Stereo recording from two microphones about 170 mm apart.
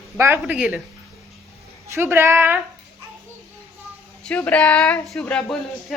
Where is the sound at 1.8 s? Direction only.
15° right (ahead or behind).